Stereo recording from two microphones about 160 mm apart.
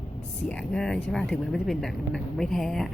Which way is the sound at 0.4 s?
5° left (ahead or behind).